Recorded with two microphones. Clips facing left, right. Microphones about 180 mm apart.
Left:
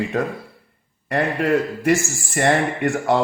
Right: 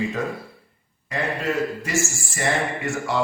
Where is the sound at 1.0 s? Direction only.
60° left (ahead or behind).